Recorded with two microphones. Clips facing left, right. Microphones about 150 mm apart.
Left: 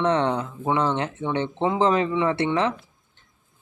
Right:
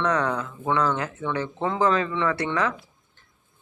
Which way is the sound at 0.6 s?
15° left (ahead or behind).